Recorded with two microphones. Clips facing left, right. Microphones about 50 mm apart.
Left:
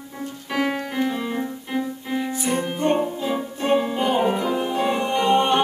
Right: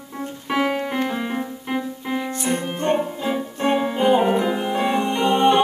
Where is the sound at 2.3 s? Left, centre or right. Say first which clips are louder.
Even; centre.